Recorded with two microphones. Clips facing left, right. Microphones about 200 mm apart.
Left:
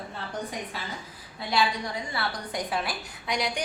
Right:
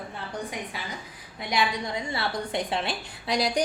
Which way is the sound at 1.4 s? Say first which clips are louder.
Even; 20° right (ahead or behind).